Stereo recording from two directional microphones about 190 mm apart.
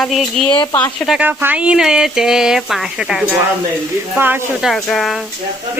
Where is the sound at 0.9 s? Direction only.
Centre (ahead or behind).